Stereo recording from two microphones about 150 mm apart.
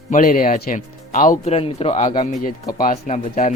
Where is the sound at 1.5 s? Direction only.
40° left (ahead or behind).